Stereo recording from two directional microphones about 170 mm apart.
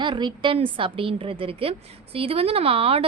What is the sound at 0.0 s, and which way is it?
A woman's voice, 25° right (ahead or behind).